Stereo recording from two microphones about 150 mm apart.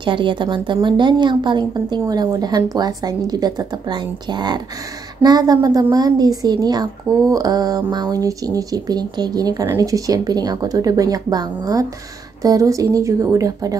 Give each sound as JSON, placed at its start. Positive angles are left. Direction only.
{"t": 0.0, "sound": "a woman's voice", "side_deg": -30}